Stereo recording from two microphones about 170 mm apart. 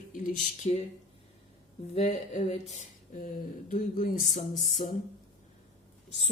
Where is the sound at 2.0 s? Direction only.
40° left (ahead or behind).